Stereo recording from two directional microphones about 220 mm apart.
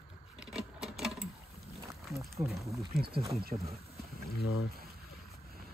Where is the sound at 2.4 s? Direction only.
30° right (ahead or behind).